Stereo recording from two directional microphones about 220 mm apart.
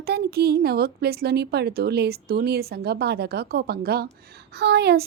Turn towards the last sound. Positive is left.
turn(degrees=-45)  # may be behind; listen again after turning